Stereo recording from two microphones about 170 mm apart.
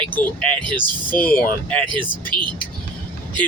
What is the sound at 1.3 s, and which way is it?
Speech, 10° left (ahead or behind).